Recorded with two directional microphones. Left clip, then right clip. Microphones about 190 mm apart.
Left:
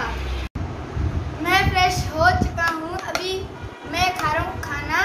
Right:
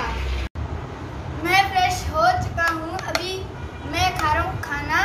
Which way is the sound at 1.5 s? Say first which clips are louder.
Even; 15° left (ahead or behind).